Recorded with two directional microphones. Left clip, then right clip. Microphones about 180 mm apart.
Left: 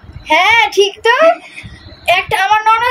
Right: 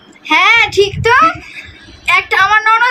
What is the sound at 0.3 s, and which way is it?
A woman's voice, 25° right (ahead or behind).